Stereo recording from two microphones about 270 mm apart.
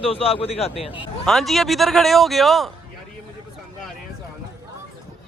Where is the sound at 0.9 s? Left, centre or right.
Centre.